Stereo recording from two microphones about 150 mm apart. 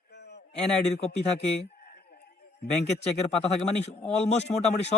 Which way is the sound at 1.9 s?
90° left.